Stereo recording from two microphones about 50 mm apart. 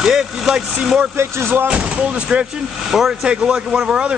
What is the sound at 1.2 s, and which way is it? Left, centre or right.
Speech, right.